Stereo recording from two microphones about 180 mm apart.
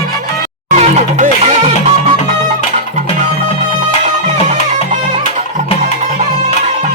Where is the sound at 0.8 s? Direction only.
40° right (ahead or behind).